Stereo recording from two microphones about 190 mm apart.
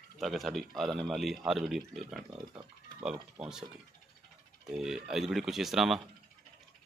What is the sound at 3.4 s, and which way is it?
Speech, 30° right (ahead or behind).